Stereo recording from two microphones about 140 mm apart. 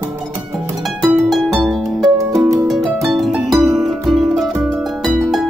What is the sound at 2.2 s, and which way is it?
Music, 25° right (ahead or behind).